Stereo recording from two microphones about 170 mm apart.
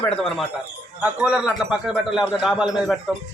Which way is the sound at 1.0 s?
5° right (ahead or behind).